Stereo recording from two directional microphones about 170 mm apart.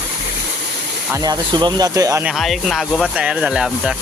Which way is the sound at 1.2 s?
25° right (ahead or behind).